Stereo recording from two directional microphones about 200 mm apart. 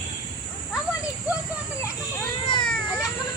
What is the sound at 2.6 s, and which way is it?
Children playing, 5° left (ahead or behind).